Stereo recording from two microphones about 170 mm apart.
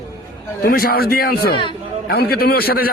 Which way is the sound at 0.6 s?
60° left (ahead or behind).